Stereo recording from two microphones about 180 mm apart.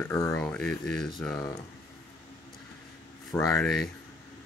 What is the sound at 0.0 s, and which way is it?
Speech, 15° left (ahead or behind).